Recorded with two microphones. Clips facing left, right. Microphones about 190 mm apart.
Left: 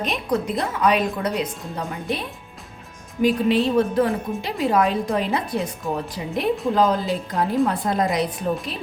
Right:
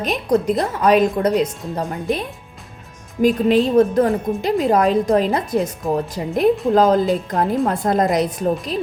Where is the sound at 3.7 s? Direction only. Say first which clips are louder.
Right 5 dB; 45° right (ahead or behind).